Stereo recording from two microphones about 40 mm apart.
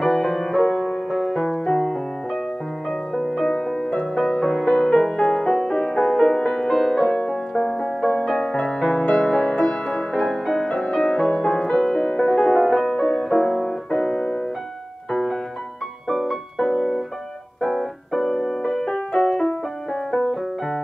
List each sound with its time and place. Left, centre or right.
0.0 s music: centre
3.5 s music: centre
4.2 s music: centre
12.2 s music: centre
13.8 s piano: left
16.1 s music: centre
17.6 s keyboard: centre
18.2 s music: centre